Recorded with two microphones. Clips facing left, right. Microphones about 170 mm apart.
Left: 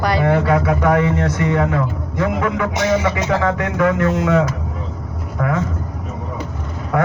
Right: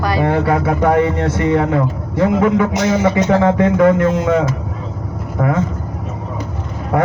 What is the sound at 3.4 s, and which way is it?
Speech, 30° right (ahead or behind).